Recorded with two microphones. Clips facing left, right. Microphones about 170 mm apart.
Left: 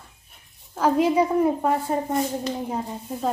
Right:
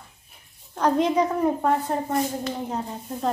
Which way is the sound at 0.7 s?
5° left (ahead or behind).